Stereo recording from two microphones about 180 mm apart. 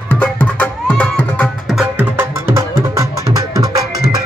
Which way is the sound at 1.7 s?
5° right (ahead or behind).